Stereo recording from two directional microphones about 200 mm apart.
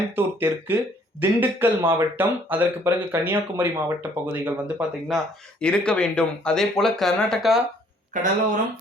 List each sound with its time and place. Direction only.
0.2 s speech: 10° right (ahead or behind)
8.1 s speech: 40° right (ahead or behind)